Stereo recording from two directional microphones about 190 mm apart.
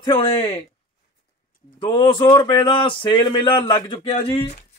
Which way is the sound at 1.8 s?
25° left (ahead or behind).